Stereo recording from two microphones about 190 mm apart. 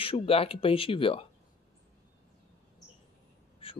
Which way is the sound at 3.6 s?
30° left (ahead or behind).